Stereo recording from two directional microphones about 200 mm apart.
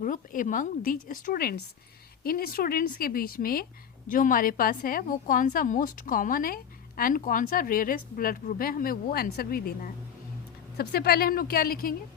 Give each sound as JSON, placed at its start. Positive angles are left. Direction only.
{"t": 0.0, "sound": "a woman's voice", "side_deg": 40}